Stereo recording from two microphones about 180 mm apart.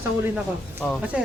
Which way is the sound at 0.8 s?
Centre (ahead or behind).